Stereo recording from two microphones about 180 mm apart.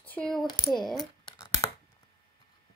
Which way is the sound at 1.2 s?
20° left (ahead or behind).